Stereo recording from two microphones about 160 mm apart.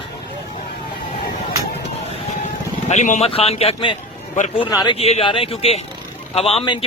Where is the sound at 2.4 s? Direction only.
50° left (ahead or behind); by 5.0 s 30° left (ahead or behind).